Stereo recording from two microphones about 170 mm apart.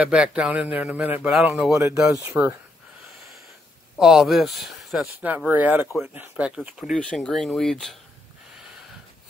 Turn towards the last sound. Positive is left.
turn(degrees=0)  # may be behind; listen again after turning